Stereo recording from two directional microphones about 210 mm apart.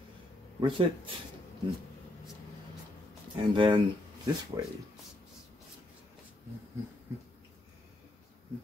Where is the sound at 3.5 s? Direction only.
20° right (ahead or behind).